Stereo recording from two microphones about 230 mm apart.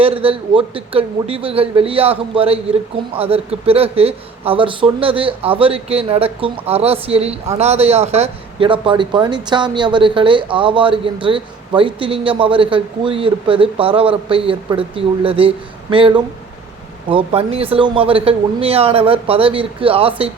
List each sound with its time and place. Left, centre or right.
0.0 s a man's voice: right